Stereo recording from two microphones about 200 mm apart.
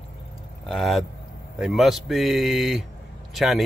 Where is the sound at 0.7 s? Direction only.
Centre (ahead or behind).